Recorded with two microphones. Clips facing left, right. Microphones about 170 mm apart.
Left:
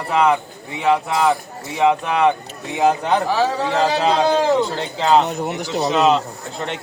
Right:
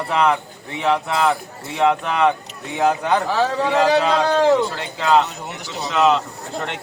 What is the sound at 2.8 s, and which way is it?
Speech, 15° left (ahead or behind).